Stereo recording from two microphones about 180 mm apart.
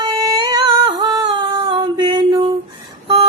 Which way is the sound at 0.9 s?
25° right (ahead or behind).